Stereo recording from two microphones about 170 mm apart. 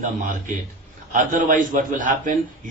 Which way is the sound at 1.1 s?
50° right (ahead or behind).